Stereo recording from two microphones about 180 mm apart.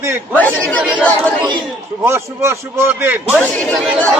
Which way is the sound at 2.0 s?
15° right (ahead or behind).